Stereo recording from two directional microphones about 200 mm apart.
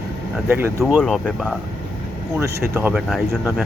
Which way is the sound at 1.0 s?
5° left (ahead or behind).